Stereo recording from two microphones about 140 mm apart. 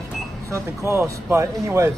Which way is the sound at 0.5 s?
20° right (ahead or behind).